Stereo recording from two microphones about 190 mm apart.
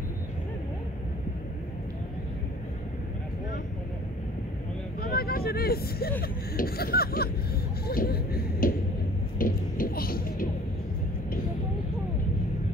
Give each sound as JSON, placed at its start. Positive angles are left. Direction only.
{"t": 5.0, "sound": "vehicle", "side_deg": 55}
{"t": 6.2, "sound": "a sound", "side_deg": 50}
{"t": 9.4, "sound": "music", "side_deg": 50}